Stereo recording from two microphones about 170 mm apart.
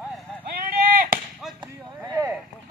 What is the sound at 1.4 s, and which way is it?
Whip, centre (ahead or behind).